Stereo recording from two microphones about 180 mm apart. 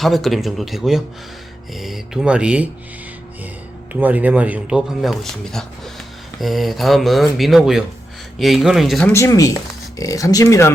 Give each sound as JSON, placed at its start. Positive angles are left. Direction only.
{"t": 0.0, "sound": "speech", "side_deg": 0}
{"t": 3.9, "sound": "speech", "side_deg": -10}
{"t": 9.1, "sound": "speech", "side_deg": 15}